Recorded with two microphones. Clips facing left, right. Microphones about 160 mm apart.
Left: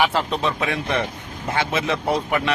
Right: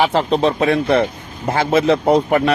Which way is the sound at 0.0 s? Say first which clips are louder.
Right 5 dB; 35° right (ahead or behind).